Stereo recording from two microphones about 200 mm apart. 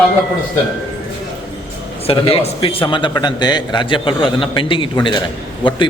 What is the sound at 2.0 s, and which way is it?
A man's voice, 30° left (ahead or behind).